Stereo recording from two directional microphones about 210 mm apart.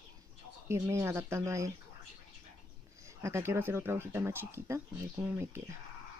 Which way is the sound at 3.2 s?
15° right (ahead or behind).